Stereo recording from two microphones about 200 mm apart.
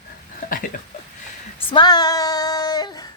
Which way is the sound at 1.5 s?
25° left (ahead or behind).